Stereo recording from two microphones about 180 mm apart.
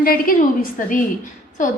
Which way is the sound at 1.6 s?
45° left (ahead or behind).